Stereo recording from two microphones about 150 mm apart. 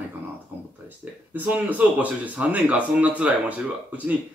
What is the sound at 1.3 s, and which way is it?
A man's voice, 10° right (ahead or behind).